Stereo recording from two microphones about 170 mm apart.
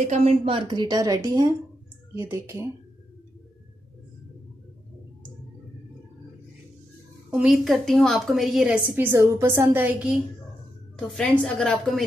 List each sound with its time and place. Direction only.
0.1 s a woman's voice: 35° right (ahead or behind); by 2.7 s 15° right (ahead or behind)
7.2 s a woman's voice: 5° right (ahead or behind)
11.0 s a woman's voice: 5° left (ahead or behind)